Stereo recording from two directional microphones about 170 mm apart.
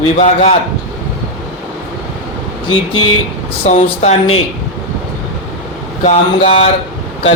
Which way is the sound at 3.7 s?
45° left (ahead or behind).